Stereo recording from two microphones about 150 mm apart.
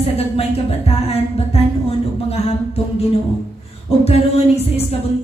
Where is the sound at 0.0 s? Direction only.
40° left (ahead or behind).